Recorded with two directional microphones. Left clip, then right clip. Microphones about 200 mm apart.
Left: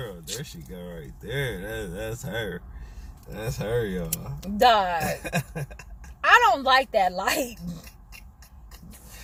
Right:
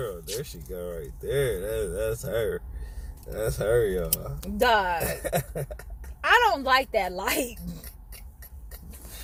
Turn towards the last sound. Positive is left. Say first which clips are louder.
# left 1 dB
turn(degrees=15)  # may be behind; listen again after turning